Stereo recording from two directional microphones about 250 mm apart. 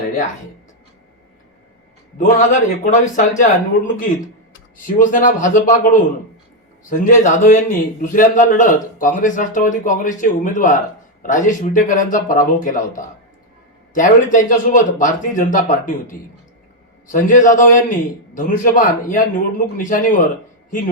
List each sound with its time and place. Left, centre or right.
2.1 s a man's voice: left